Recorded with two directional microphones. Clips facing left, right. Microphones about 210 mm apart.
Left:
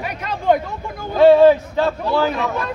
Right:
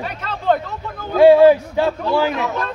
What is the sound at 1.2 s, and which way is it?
A man's voice, 10° right (ahead or behind).